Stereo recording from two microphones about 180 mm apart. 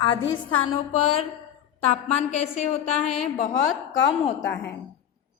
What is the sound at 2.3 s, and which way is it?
Speech, 40° left (ahead or behind).